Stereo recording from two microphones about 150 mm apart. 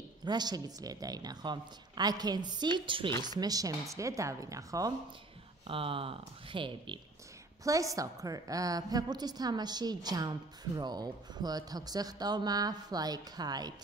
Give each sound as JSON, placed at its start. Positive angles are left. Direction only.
{"t": 0.2, "sound": "a woman's voice", "side_deg": -30}
{"t": 5.7, "sound": "speech", "side_deg": -35}
{"t": 7.6, "sound": "a woman's voice", "side_deg": -20}